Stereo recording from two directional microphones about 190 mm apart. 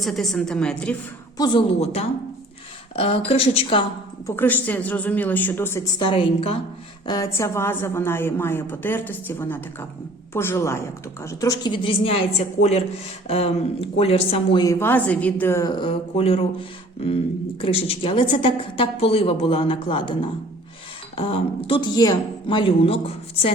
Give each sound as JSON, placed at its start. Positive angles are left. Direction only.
{"t": 0.0, "sound": "a woman's voice", "side_deg": 0}
{"t": 1.4, "sound": "a woman's voice", "side_deg": 25}
{"t": 4.3, "sound": "a woman's voice", "side_deg": 10}
{"t": 7.0, "sound": "a woman's voice", "side_deg": 20}
{"t": 15.8, "sound": "a woman's voice", "side_deg": 30}